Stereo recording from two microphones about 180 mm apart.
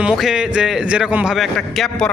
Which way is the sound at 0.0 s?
5° right (ahead or behind).